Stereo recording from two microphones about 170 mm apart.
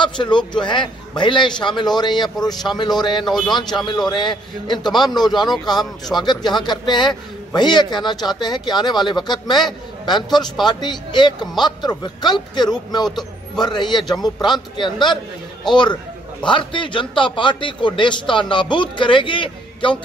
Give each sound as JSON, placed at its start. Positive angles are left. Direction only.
{"t": 0.0, "sound": "speech", "side_deg": 25}
{"t": 3.3, "sound": "a man's voice", "side_deg": 0}
{"t": 3.8, "sound": "speech", "side_deg": 25}